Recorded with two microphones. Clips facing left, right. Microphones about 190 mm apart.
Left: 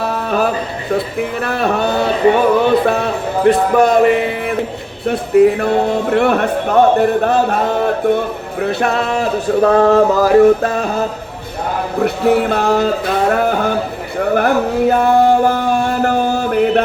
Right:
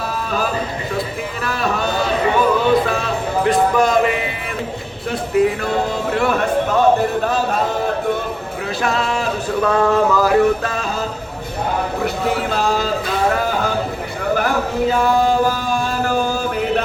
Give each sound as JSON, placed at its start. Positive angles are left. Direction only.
{"t": 0.0, "sound": "a sound", "side_deg": 60}
{"t": 0.9, "sound": "speech", "side_deg": 60}
{"t": 5.5, "sound": "speech", "side_deg": 60}
{"t": 9.6, "sound": "music", "side_deg": 35}
{"t": 10.8, "sound": "speech", "side_deg": 60}
{"t": 12.0, "sound": "speech", "side_deg": 60}
{"t": 13.3, "sound": "a sound", "side_deg": 60}
{"t": 14.2, "sound": "music", "side_deg": 55}